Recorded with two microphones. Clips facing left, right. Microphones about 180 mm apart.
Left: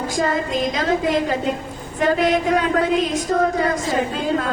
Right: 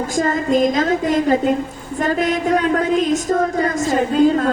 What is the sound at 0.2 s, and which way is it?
A woman's voice, 45° right (ahead or behind).